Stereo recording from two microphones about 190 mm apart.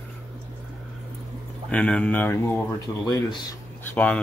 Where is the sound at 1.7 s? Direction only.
5° left (ahead or behind).